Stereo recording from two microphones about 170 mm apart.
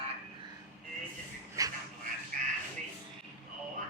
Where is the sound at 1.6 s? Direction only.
20° right (ahead or behind).